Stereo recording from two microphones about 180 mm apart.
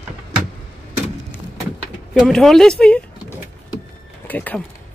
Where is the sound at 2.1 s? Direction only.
Centre (ahead or behind).